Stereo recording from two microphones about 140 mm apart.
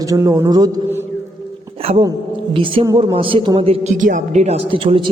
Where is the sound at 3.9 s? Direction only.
65° right (ahead or behind); by 5.0 s 40° right (ahead or behind).